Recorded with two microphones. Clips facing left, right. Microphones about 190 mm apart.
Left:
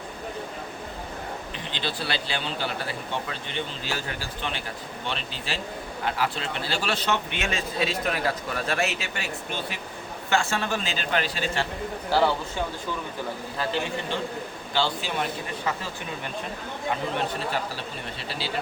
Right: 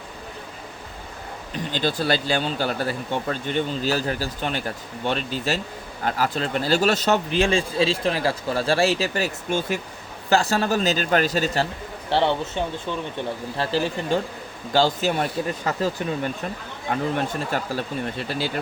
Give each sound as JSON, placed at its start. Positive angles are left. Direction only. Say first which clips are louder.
{"t": 1.5, "sound": "a man's voice", "louder": "right 10 dB", "side_deg": -45}
{"t": 12.0, "sound": "a man's voice", "louder": "right 2 dB", "side_deg": -25}
{"t": 16.9, "sound": "speech", "louder": "right 5 dB", "side_deg": -45}